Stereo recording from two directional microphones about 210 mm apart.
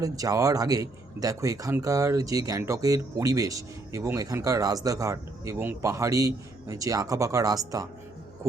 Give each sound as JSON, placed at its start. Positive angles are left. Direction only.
{"t": 0.0, "sound": "speech", "side_deg": -15}